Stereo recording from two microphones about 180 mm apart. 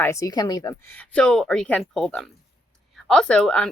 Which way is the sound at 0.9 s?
10° left (ahead or behind).